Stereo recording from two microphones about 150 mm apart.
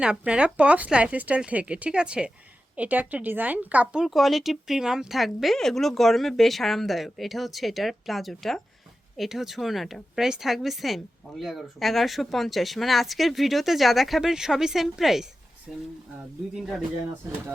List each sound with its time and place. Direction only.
0.0 s speech: 5° right (ahead or behind)